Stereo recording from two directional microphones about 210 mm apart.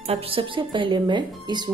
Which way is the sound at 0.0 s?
30° right (ahead or behind).